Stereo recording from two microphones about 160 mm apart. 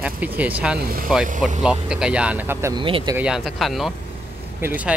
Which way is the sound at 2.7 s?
30° right (ahead or behind).